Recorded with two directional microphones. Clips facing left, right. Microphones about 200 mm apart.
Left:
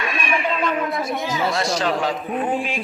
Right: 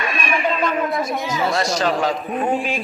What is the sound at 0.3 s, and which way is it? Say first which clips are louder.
Speech: right 2 dB; 40° right (ahead or behind).